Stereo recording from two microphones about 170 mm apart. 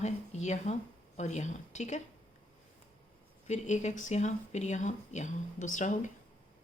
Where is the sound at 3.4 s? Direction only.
45° left (ahead or behind).